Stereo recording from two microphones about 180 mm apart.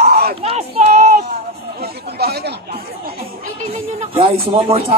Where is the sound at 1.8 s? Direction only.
65° right (ahead or behind).